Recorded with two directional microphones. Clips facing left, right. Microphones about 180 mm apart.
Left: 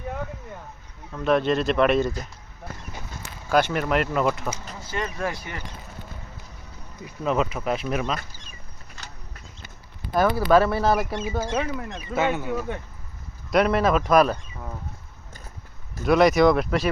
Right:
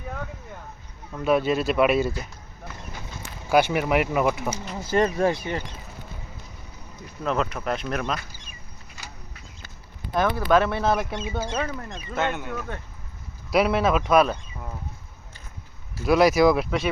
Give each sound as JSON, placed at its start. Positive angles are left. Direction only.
{"t": 1.1, "sound": "speech", "side_deg": -5}
{"t": 3.5, "sound": "speech", "side_deg": -10}
{"t": 4.9, "sound": "speech", "side_deg": -40}
{"t": 7.3, "sound": "speech", "side_deg": 5}
{"t": 9.0, "sound": "a sound", "side_deg": -10}
{"t": 10.2, "sound": "speech", "side_deg": 5}
{"t": 13.5, "sound": "speech", "side_deg": -5}
{"t": 16.0, "sound": "speech", "side_deg": -5}